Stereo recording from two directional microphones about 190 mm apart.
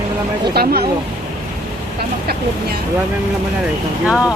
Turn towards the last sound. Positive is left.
turn(degrees=-5)  # may be behind; listen again after turning